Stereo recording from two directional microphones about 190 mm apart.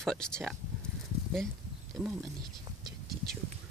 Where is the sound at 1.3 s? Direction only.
Centre (ahead or behind).